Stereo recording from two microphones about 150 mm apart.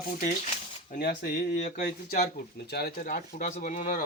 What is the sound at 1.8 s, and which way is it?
Speech, 85° left.